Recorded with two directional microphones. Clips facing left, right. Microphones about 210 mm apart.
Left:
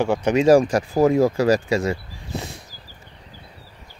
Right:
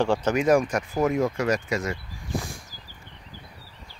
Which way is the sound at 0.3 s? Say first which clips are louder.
Left 8 dB; 30° left (ahead or behind).